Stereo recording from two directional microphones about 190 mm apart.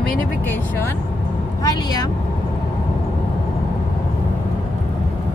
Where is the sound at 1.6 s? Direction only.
20° left (ahead or behind).